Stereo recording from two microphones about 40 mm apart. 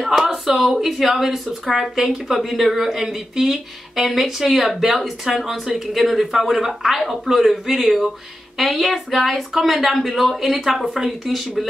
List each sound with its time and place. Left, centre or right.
0.0 s speech: centre